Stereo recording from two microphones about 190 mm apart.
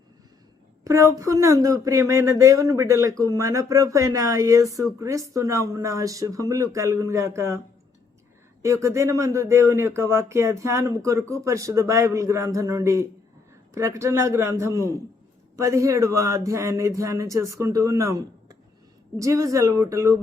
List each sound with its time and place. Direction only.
0.9 s speech: 15° right (ahead or behind)
8.6 s speech: 15° right (ahead or behind)